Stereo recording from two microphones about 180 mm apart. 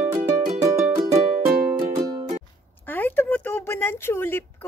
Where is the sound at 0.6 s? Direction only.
15° right (ahead or behind).